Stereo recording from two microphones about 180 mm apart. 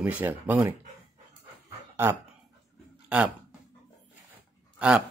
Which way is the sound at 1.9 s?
15° right (ahead or behind).